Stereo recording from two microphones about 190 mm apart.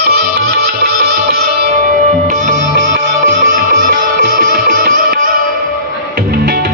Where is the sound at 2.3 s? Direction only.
40° right (ahead or behind).